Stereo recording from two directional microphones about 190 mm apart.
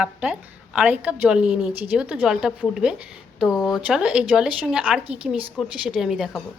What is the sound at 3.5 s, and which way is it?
Speech, 15° left (ahead or behind).